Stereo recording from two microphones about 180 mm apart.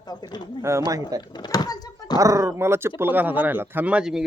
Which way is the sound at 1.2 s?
25° left (ahead or behind).